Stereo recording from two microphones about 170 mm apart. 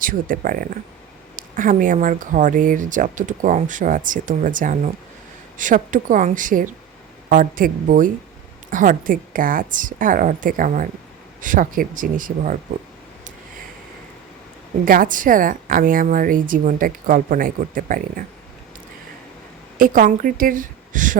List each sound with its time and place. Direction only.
0.0 s speech: 55° right (ahead or behind)
14.8 s speech: 55° right (ahead or behind)
19.8 s speech: 50° right (ahead or behind)